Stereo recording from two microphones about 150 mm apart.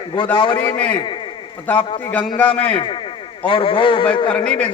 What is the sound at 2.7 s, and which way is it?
A man's voice, 35° left (ahead or behind).